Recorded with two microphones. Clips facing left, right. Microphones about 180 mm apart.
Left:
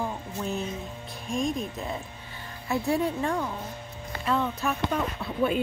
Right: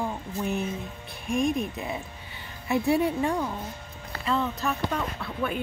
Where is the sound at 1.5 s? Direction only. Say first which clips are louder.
Right 2 dB; 10° right (ahead or behind).